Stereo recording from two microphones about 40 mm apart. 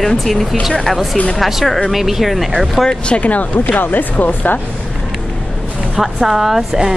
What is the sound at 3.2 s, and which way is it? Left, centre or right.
Speech, left.